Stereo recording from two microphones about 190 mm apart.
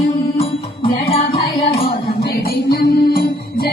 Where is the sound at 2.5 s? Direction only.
50° left (ahead or behind).